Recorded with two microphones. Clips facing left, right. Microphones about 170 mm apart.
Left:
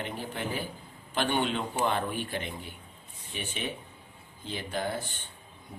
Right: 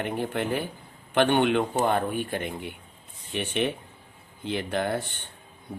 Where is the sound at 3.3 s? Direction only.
70° right (ahead or behind).